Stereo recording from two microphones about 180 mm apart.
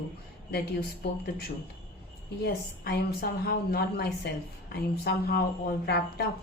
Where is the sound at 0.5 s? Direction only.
60° left (ahead or behind).